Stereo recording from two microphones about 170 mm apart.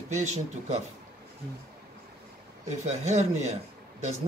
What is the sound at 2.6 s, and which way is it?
Speech, 40° right (ahead or behind).